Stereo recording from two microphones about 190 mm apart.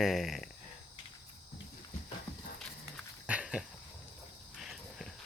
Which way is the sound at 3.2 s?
5° right (ahead or behind).